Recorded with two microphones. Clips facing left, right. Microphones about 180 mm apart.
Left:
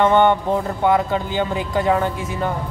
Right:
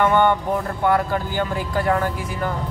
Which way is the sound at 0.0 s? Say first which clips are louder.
Left 2 dB; 20° left (ahead or behind).